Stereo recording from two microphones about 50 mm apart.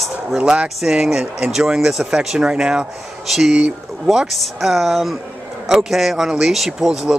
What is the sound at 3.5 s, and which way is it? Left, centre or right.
Speech, right.